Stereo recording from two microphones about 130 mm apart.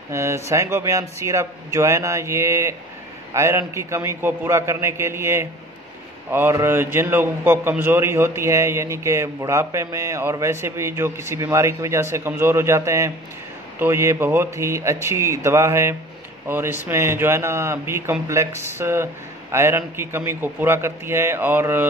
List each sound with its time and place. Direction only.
0.1 s a man's voice: 20° right (ahead or behind)